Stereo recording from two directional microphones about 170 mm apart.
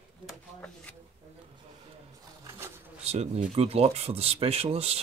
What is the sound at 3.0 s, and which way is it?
Speech, 40° right (ahead or behind).